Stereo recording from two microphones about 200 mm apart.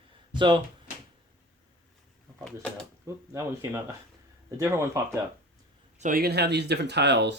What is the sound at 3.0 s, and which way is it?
Speech, 15° right (ahead or behind).